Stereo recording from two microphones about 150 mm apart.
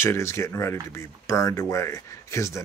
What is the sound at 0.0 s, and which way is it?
Speech, 20° left (ahead or behind).